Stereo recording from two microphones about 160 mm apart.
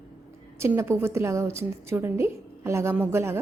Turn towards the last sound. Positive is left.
turn(degrees=-15)  # may be behind; listen again after turning